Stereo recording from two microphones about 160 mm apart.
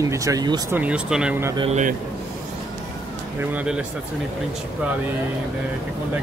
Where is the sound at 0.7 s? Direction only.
10° right (ahead or behind).